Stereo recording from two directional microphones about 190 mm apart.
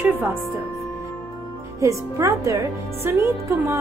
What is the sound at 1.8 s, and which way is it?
Speech, 15° right (ahead or behind).